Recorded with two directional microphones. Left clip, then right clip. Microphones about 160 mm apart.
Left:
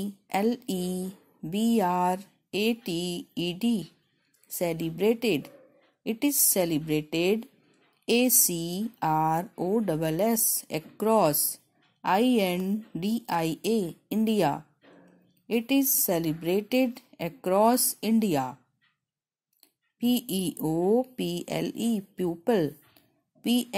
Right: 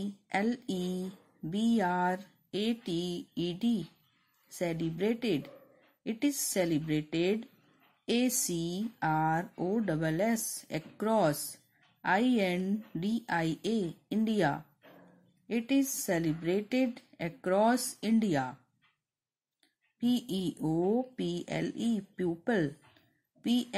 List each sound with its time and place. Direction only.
0.0 s speech: 20° left (ahead or behind)
20.0 s speech: 20° left (ahead or behind)